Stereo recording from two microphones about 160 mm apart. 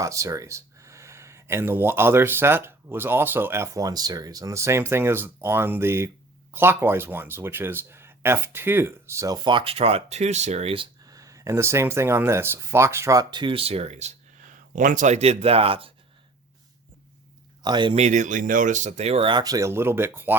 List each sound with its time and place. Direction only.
0.0 s speech: 20° right (ahead or behind); by 10.8 s 40° right (ahead or behind)
11.0 s speech: 20° right (ahead or behind); by 14.1 s 45° right (ahead or behind)
14.8 s speech: 55° right (ahead or behind); by 15.9 s 35° right (ahead or behind)
17.6 s speech: 30° right (ahead or behind)
17.9 s speech: 45° right (ahead or behind); by 20.3 s 15° right (ahead or behind)